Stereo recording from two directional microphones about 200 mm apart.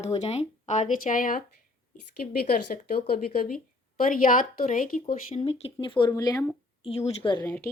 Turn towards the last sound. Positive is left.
turn(degrees=15)  # may be behind; listen again after turning